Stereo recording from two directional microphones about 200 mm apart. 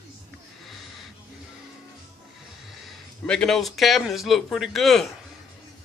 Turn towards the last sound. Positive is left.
turn(degrees=0)  # may be behind; listen again after turning